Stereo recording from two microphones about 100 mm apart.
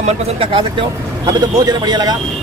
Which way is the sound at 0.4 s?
55° right (ahead or behind).